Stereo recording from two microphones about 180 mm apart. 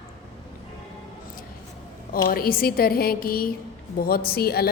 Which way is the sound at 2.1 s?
55° left (ahead or behind).